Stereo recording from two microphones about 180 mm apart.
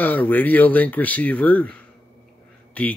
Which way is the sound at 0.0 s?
10° left (ahead or behind).